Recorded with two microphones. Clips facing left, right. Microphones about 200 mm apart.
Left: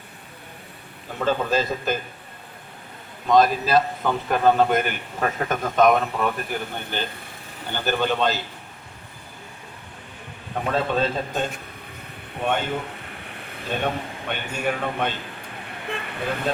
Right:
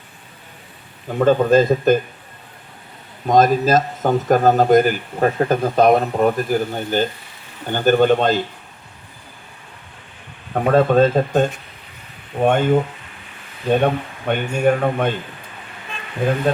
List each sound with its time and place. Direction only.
1.2 s a man's voice: 50° right (ahead or behind)
3.2 s a man's voice: 45° right (ahead or behind)
10.5 s a man's voice: 50° right (ahead or behind)
13.1 s a sound: 60° left (ahead or behind)
13.7 s a man's voice: 50° right (ahead or behind)